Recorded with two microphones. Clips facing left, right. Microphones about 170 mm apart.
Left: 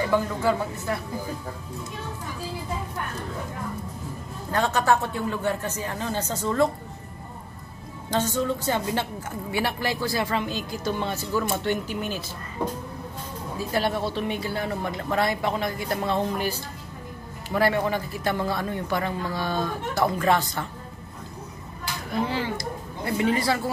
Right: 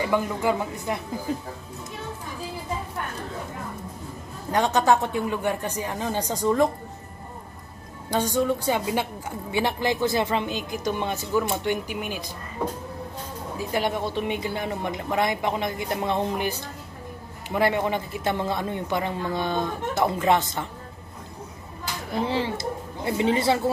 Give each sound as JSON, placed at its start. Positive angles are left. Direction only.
{"t": 0.1, "sound": "speech", "side_deg": -15}
{"t": 4.5, "sound": "speech", "side_deg": -20}
{"t": 8.1, "sound": "speech", "side_deg": -15}
{"t": 13.6, "sound": "speech", "side_deg": -15}
{"t": 22.2, "sound": "speech", "side_deg": -25}